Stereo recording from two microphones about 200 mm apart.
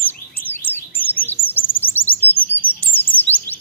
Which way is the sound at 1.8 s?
10° left (ahead or behind).